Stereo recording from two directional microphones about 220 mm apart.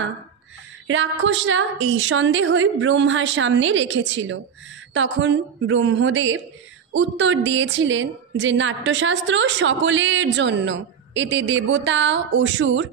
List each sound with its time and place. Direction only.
0.8 s a woman's voice: 60° right (ahead or behind)